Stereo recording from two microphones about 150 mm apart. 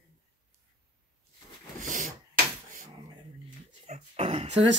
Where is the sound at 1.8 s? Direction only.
60° right (ahead or behind).